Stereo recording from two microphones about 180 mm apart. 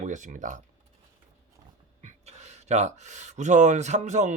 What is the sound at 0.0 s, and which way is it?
Speech, 45° right (ahead or behind).